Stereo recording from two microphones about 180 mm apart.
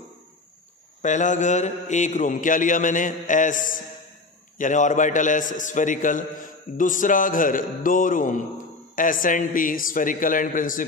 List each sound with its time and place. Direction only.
1.0 s a man's voice: 45° left (ahead or behind)